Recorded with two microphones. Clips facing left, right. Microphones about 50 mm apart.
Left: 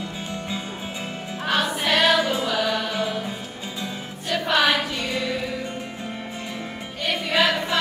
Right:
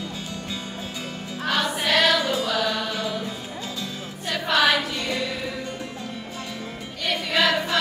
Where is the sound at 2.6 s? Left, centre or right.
Centre.